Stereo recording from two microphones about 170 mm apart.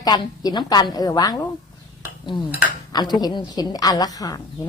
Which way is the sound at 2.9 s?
25° left (ahead or behind).